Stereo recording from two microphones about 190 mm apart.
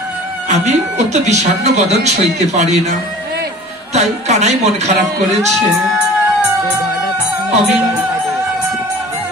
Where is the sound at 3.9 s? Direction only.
35° right (ahead or behind).